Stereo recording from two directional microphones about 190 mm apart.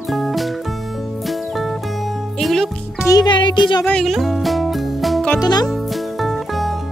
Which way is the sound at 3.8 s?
5° left (ahead or behind).